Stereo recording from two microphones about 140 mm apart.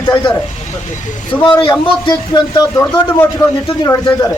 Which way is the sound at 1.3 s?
35° left (ahead or behind).